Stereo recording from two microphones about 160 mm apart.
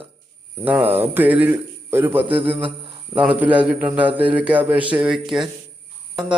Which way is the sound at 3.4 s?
10° right (ahead or behind).